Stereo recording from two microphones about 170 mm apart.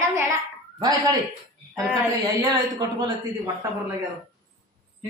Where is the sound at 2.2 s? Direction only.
25° right (ahead or behind).